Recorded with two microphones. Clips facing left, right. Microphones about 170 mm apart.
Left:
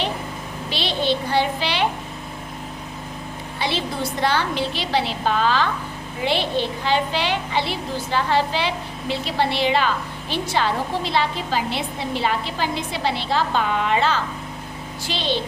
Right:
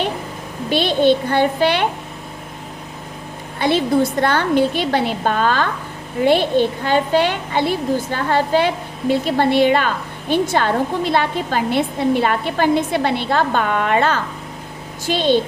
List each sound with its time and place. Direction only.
0.7 s a woman's voice: 50° right (ahead or behind)
3.6 s a woman's voice: 50° right (ahead or behind)